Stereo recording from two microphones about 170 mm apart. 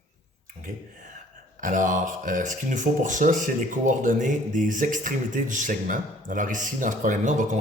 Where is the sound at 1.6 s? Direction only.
50° right (ahead or behind).